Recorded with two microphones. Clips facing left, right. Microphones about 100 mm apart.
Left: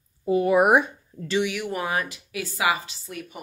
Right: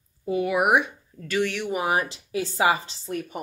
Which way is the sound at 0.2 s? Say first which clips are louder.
Left 4 dB; 35° left (ahead or behind).